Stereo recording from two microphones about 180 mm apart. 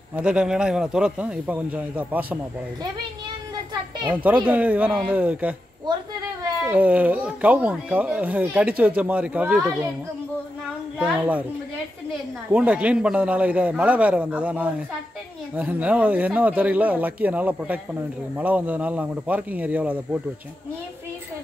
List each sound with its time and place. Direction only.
0.1 s a man's voice: 5° right (ahead or behind)
4.1 s speech: 10° right (ahead or behind)
6.7 s speech: 10° right (ahead or behind)
11.0 s a man's voice: 5° right (ahead or behind)
12.4 s speech: 5° right (ahead or behind)